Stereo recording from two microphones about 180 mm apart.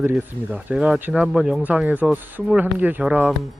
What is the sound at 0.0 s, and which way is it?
Speech, 5° right (ahead or behind).